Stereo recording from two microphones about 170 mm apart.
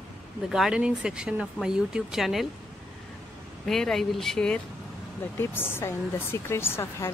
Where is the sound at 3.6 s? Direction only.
Centre (ahead or behind).